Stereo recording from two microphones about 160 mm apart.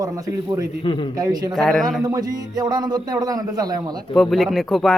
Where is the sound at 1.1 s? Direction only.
25° right (ahead or behind).